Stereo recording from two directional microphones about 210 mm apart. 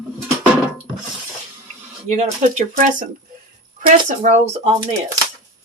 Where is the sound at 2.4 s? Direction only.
35° right (ahead or behind).